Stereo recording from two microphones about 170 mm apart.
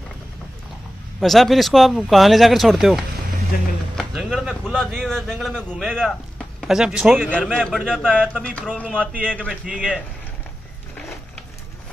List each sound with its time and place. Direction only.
1.2 s speech: centre (ahead or behind)